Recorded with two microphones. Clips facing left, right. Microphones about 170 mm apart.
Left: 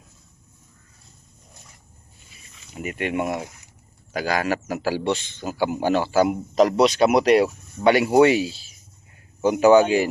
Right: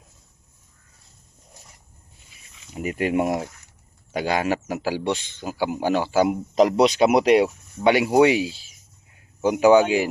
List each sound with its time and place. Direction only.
2.8 s speech: 30° right (ahead or behind)
4.1 s a man's voice: 25° right (ahead or behind)